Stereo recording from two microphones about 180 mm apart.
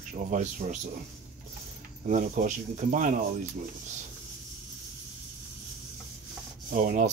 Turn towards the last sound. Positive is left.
turn(degrees=-45)  # may be behind; listen again after turning